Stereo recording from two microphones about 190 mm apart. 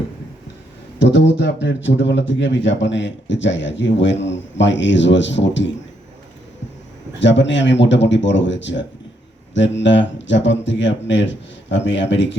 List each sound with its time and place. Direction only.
0.9 s speech: 70° left (ahead or behind)
7.2 s speech: 70° left (ahead or behind)